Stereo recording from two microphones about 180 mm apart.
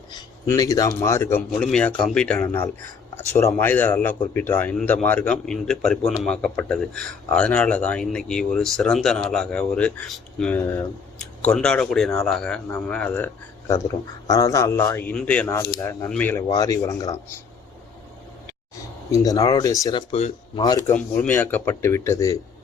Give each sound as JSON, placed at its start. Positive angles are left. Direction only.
{"t": 0.4, "sound": "speech", "side_deg": 20}
{"t": 19.1, "sound": "speech", "side_deg": 20}
{"t": 20.6, "sound": "speech", "side_deg": 20}